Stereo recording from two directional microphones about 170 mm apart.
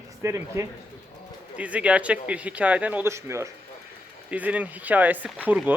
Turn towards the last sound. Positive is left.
turn(degrees=-10)  # may be behind; listen again after turning